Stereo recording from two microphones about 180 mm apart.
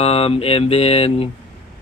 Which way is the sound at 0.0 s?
35° left (ahead or behind).